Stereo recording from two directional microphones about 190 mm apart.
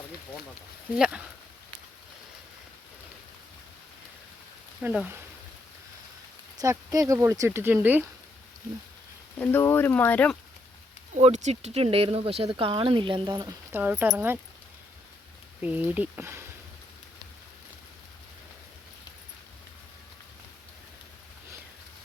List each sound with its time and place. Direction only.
0.9 s speech: 5° right (ahead or behind)
4.8 s speech: 10° right (ahead or behind)
6.6 s speech: 15° right (ahead or behind)
9.4 s speech: 10° left (ahead or behind)
11.2 s speech: 35° right (ahead or behind); by 14.3 s 10° right (ahead or behind)
15.6 s speech: 10° right (ahead or behind)